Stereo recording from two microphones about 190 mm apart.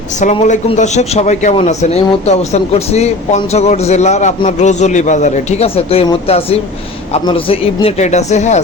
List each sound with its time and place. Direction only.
0.2 s a man's voice: 40° left (ahead or behind)